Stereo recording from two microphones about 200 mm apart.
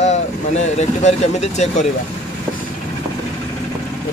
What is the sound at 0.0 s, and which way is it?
Speech, 35° left (ahead or behind).